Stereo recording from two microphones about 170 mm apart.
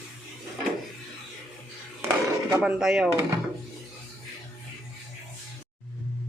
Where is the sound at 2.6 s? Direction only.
5° right (ahead or behind).